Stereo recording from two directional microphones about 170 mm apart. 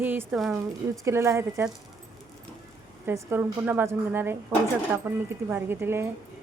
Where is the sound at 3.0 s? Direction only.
10° right (ahead or behind).